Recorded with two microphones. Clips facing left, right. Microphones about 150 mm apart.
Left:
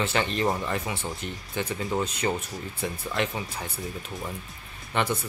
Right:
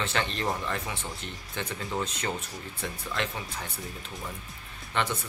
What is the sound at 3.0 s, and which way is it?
Speech, 20° left (ahead or behind).